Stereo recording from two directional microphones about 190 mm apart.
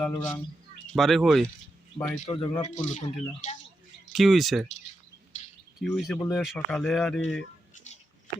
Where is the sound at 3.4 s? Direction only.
40° left (ahead or behind).